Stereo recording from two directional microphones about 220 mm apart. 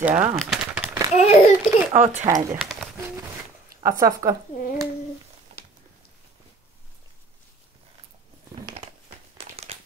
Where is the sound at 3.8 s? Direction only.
15° right (ahead or behind).